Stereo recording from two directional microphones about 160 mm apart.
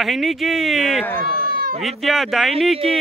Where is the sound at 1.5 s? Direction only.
65° right (ahead or behind).